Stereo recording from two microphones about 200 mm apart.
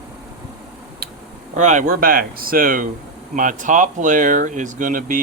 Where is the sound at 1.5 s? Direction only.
35° right (ahead or behind).